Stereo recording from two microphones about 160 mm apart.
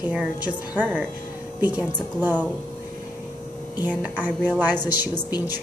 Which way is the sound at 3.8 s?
10° right (ahead or behind).